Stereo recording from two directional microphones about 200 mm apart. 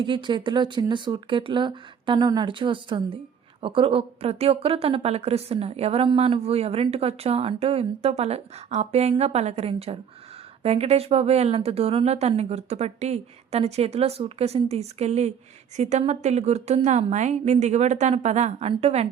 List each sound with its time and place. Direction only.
0.0 s speech: 25° right (ahead or behind)